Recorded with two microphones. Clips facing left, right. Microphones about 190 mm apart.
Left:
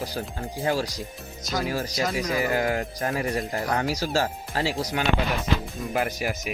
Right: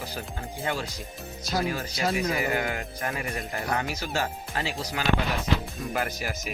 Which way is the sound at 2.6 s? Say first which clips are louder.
Left 5 dB; 35° left (ahead or behind).